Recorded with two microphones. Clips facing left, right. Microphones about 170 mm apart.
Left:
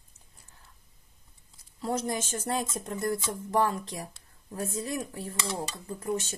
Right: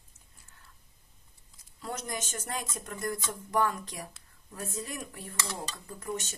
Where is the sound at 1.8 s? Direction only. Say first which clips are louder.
Left 7 dB; 30° left (ahead or behind).